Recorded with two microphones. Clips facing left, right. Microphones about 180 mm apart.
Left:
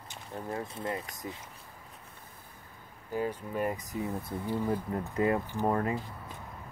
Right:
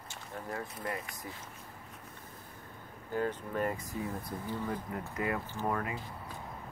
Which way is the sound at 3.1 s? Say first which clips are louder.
Left 1 dB; 10° left (ahead or behind).